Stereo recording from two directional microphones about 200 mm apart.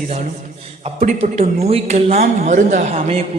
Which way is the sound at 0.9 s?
30° right (ahead or behind).